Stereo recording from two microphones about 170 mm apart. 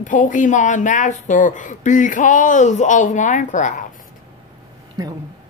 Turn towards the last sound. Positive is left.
turn(degrees=-20)  # may be behind; listen again after turning